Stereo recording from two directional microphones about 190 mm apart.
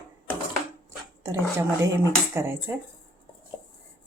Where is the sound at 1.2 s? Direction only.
15° right (ahead or behind).